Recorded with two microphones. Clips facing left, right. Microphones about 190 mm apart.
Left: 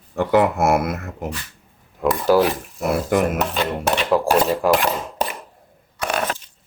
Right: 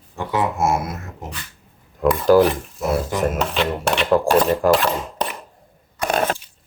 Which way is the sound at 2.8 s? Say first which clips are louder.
Left 3 dB; 60° left (ahead or behind).